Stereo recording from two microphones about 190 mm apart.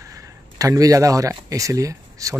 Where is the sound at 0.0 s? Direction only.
15° right (ahead or behind).